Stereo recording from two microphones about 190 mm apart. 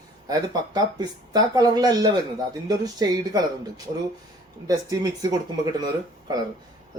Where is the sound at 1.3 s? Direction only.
20° right (ahead or behind).